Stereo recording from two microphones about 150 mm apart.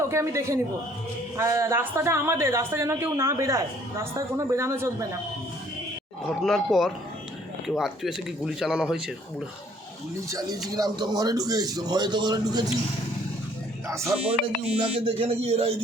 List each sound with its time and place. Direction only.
0.0 s a woman's voice: 20° right (ahead or behind)
6.4 s speech: centre (ahead or behind)
10.2 s a woman's voice: 20° right (ahead or behind)
13.8 s speech: 20° right (ahead or behind)
14.6 s speech: 40° right (ahead or behind)